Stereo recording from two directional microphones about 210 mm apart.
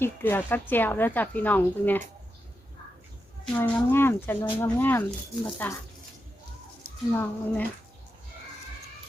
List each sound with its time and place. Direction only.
0.0 s a woman's voice: 10° left (ahead or behind)
3.4 s a woman's voice: 10° left (ahead or behind)
7.1 s a woman's voice: 10° left (ahead or behind)